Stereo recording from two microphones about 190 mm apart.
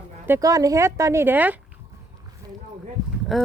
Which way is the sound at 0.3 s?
20° right (ahead or behind).